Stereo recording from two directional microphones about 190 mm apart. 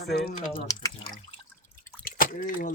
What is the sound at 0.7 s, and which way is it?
Speech, 20° left (ahead or behind).